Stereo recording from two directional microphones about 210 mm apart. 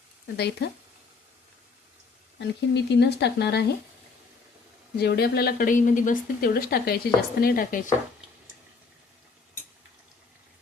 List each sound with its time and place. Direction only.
0.3 s a woman's voice: 50° left (ahead or behind)
2.4 s a woman's voice: 55° left (ahead or behind)
4.9 s a woman's voice: 50° left (ahead or behind)